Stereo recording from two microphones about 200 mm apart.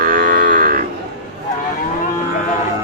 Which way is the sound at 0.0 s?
45° right (ahead or behind).